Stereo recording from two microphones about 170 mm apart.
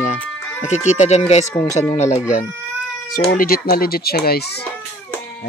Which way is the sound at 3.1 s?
55° left (ahead or behind).